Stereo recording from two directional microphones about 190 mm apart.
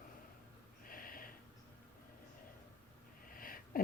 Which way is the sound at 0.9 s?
50° left (ahead or behind).